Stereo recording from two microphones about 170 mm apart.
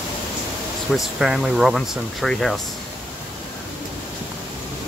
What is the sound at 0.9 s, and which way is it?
Speech, 5° right (ahead or behind).